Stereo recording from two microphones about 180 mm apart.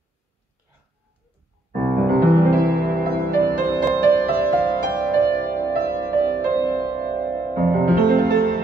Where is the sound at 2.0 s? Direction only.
55° right (ahead or behind).